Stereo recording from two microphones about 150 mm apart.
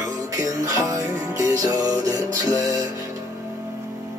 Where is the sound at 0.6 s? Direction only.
20° right (ahead or behind).